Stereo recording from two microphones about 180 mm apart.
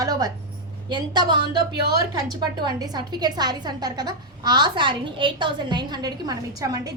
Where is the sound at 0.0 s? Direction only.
20° right (ahead or behind).